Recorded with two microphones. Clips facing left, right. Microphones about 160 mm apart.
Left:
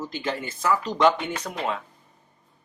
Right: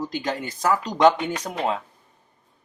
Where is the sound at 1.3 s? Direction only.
35° right (ahead or behind).